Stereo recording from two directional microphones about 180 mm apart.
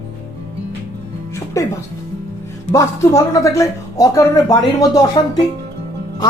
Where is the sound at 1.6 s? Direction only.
15° left (ahead or behind).